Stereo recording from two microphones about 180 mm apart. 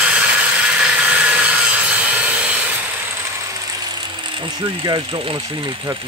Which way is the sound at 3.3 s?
20° right (ahead or behind).